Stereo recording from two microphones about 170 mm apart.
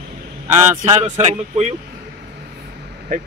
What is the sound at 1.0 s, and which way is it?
Speech, 40° right (ahead or behind).